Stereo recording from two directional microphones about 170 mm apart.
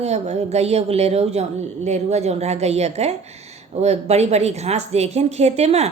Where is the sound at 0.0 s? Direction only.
40° right (ahead or behind).